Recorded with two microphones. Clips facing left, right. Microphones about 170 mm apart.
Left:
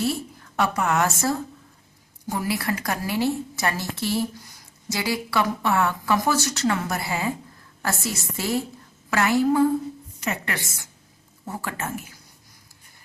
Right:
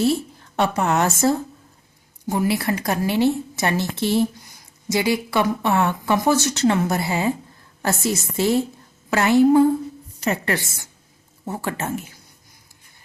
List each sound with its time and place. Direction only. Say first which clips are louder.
0.0 s speech: right 6 dB; 25° right (ahead or behind)
10.2 s a woman's voice: right 7 dB; 35° right (ahead or behind)